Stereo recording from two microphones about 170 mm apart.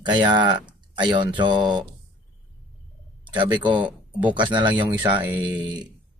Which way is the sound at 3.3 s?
25° right (ahead or behind).